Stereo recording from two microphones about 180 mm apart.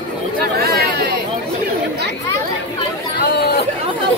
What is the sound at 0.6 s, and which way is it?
Chatter, 60° right (ahead or behind).